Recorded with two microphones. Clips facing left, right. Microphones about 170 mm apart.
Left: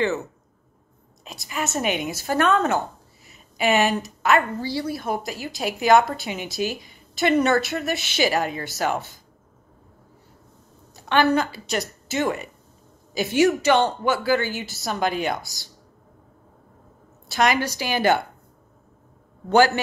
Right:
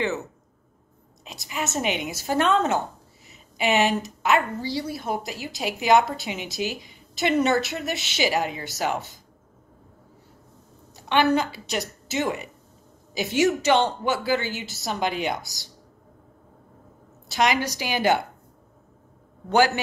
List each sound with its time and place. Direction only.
1.2 s speech: 20° right (ahead or behind)
11.1 s speech: 15° right (ahead or behind)
17.3 s speech: 15° right (ahead or behind)
19.5 s speech: 15° right (ahead or behind)